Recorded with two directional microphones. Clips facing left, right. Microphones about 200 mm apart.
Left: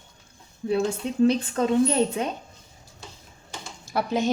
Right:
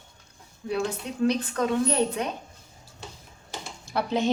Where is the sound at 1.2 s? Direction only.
25° left (ahead or behind).